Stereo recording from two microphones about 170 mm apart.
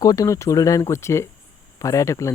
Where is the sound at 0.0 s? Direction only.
20° left (ahead or behind).